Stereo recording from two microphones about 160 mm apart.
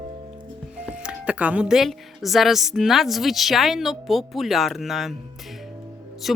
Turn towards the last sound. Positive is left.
turn(degrees=0)  # may be behind; listen again after turning